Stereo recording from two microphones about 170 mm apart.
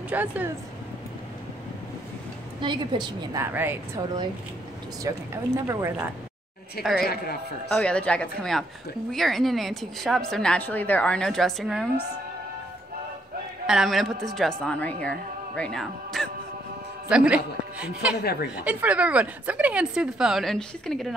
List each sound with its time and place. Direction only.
0.1 s a woman's voice: 10° right (ahead or behind)
2.6 s a woman's voice: 25° right (ahead or behind)
3.4 s a woman's voice: 10° right (ahead or behind)
5.0 s a woman's voice: 15° right (ahead or behind)
6.8 s a woman's voice: centre (ahead or behind)
13.7 s a woman's voice: centre (ahead or behind)
18.2 s speech: 65° left (ahead or behind)
18.6 s a woman's voice: 10° right (ahead or behind)